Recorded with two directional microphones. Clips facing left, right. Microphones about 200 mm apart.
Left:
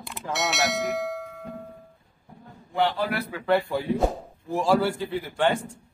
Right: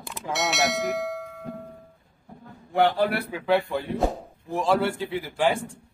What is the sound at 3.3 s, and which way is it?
Speech, 5° right (ahead or behind).